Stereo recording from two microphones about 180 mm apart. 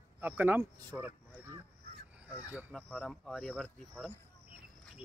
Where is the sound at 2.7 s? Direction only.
5° left (ahead or behind).